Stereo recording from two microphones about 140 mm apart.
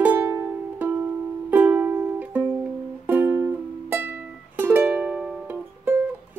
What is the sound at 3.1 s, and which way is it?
Music, 15° right (ahead or behind).